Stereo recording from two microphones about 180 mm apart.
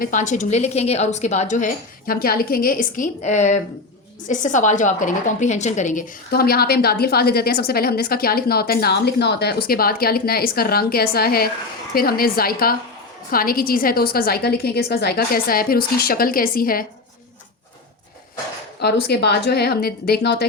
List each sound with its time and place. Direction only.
0.0 s a woman's voice: 45° left (ahead or behind)
18.8 s a woman's voice: 65° left (ahead or behind)